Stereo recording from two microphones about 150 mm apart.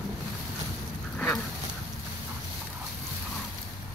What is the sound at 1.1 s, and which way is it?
Dog, 10° left (ahead or behind).